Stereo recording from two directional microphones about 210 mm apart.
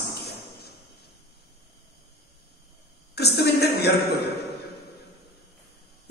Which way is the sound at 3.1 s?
50° left (ahead or behind).